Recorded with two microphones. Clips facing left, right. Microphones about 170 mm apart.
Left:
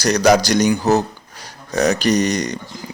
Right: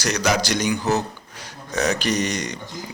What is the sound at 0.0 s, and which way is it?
A man's voice, 35° left (ahead or behind).